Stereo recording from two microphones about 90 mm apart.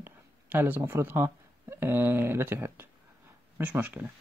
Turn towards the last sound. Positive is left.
turn(degrees=-20)  # may be behind; listen again after turning